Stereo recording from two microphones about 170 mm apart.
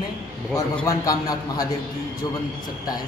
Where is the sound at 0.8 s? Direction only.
20° left (ahead or behind).